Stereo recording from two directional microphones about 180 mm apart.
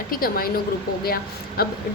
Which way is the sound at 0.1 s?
55° left (ahead or behind).